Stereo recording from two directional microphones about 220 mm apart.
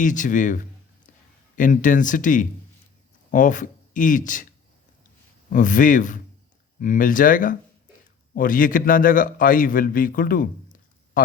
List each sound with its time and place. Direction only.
0.0 s a man's voice: 35° left (ahead or behind)
5.5 s a man's voice: 35° left (ahead or behind)